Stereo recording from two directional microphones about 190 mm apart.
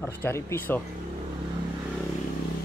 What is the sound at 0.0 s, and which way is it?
Speech, 15° left (ahead or behind).